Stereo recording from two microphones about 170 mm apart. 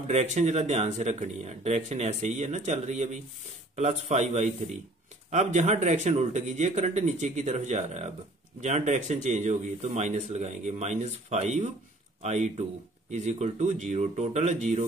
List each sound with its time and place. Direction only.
0.0 s speech: 40° right (ahead or behind)